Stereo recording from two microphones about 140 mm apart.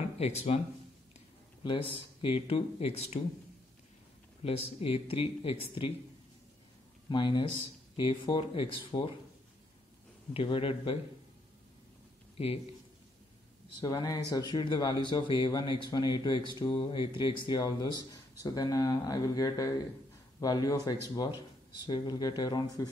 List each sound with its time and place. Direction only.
0.2 s speech: 50° left (ahead or behind)
1.6 s speech: 40° left (ahead or behind)
4.4 s speech: 45° left (ahead or behind)
7.1 s speech: 35° left (ahead or behind)
10.3 s speech: 40° left (ahead or behind)
12.4 s speech: 45° left (ahead or behind)
13.7 s speech: 25° left (ahead or behind)